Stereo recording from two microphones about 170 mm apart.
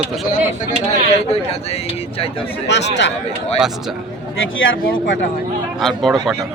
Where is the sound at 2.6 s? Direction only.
90° left.